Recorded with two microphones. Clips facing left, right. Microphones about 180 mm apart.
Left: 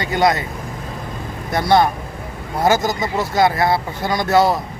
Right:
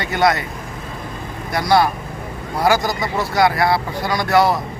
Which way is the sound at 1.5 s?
25° left (ahead or behind).